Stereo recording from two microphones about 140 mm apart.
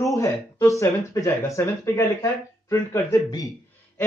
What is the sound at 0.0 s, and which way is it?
Speech, 20° left (ahead or behind).